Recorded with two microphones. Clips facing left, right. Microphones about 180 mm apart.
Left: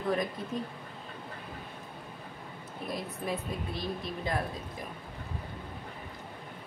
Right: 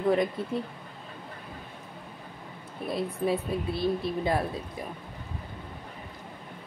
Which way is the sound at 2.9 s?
30° right (ahead or behind).